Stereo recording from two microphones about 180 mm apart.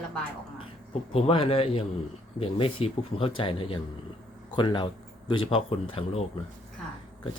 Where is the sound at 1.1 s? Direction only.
30° left (ahead or behind).